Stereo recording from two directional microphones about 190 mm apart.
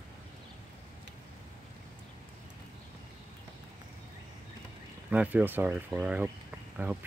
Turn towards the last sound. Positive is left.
turn(degrees=-10)  # may be behind; listen again after turning